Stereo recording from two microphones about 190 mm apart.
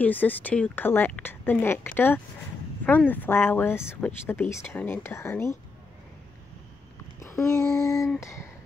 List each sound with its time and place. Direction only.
0.0 s speech: 10° left (ahead or behind)
7.2 s a sound: 15° left (ahead or behind)
8.2 s speech: 15° left (ahead or behind)